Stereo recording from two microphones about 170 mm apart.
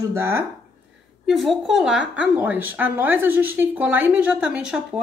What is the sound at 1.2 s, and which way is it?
A woman's voice, centre (ahead or behind).